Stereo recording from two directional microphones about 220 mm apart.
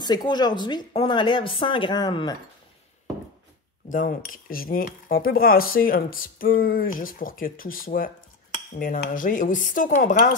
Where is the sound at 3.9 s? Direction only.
40° left (ahead or behind).